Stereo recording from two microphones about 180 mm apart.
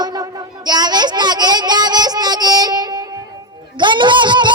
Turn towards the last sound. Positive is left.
turn(degrees=-25)  # may be behind; listen again after turning